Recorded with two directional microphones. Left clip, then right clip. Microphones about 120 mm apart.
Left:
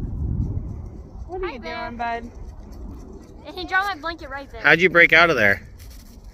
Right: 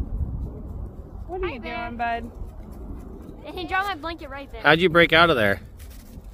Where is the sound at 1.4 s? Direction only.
15° left (ahead or behind).